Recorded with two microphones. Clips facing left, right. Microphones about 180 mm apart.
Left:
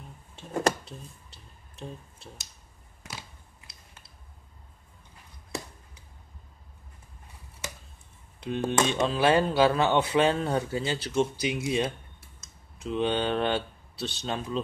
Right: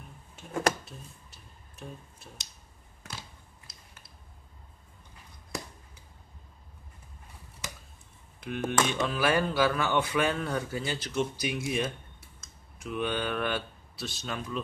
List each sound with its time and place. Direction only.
0.4 s tick-tock: 30° left (ahead or behind)
3.0 s a sound: 10° left (ahead or behind)
8.4 s speech: 25° left (ahead or behind)